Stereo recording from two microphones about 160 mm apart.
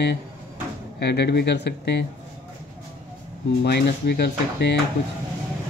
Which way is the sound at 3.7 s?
90° left.